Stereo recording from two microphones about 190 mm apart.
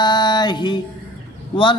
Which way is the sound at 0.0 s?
25° left (ahead or behind).